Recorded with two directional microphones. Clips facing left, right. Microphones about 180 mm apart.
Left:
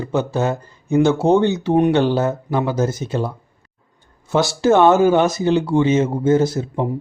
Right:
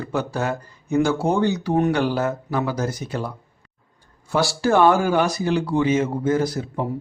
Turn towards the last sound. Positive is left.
turn(degrees=25)  # may be behind; listen again after turning